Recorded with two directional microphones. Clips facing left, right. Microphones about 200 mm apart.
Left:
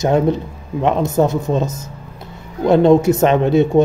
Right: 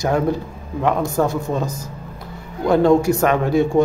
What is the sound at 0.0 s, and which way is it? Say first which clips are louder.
A man's voice: left 4 dB; 20° left (ahead or behind).